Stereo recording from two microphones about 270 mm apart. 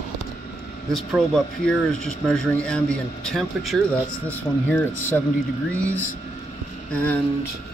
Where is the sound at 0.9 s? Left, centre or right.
Centre.